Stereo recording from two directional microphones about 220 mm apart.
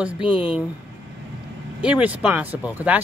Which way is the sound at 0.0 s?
5° right (ahead or behind).